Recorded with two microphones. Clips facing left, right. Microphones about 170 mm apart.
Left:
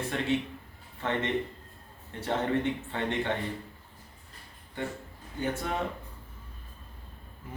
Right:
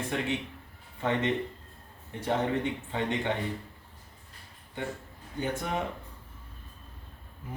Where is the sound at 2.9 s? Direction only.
15° right (ahead or behind).